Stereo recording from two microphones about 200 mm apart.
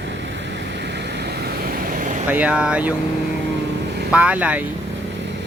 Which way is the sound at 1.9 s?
40° right (ahead or behind).